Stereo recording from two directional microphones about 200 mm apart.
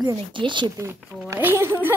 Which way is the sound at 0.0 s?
20° right (ahead or behind).